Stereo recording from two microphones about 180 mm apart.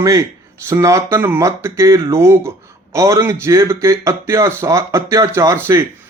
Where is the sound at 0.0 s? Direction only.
15° right (ahead or behind).